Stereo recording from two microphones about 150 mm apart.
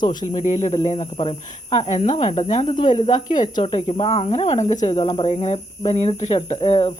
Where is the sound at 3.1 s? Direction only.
30° left (ahead or behind); by 4.8 s 50° left (ahead or behind).